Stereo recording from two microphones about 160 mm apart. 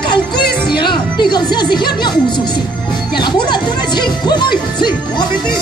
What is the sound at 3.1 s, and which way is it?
Speech, 30° left (ahead or behind).